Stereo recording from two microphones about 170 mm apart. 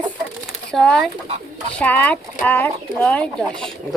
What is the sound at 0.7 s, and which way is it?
Speech, 5° left (ahead or behind).